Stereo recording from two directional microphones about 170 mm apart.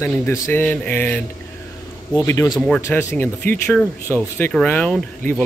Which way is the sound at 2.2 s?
15° left (ahead or behind).